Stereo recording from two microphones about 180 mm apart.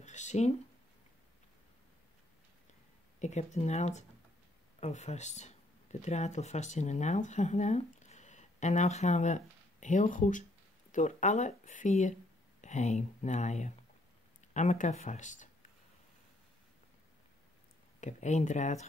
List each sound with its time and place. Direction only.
0.0 s a sound: 40° left (ahead or behind)
3.2 s speech: 40° left (ahead or behind)
18.0 s speech: 40° left (ahead or behind)